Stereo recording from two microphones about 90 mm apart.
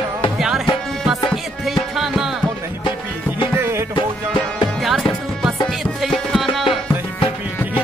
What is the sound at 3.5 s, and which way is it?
Music, 25° right (ahead or behind).